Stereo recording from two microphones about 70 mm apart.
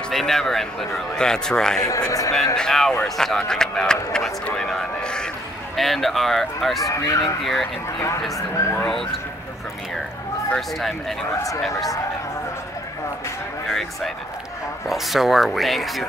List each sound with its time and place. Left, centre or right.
0.1 s speech: centre
1.9 s a man's voice: left
2.5 s speech: centre
6.9 s speech: left
8.8 s speech: centre
10.5 s speech: centre
13.7 s speech: centre